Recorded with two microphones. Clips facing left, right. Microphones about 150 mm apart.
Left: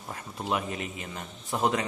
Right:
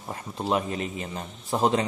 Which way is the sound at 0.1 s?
30° right (ahead or behind).